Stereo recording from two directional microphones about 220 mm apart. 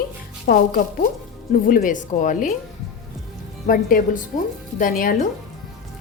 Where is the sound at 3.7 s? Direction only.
40° left (ahead or behind).